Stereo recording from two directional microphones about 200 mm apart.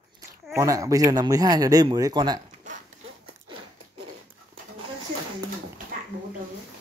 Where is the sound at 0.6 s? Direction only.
15° right (ahead or behind).